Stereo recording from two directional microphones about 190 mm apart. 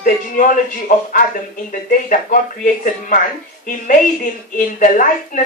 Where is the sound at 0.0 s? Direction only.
45° left (ahead or behind).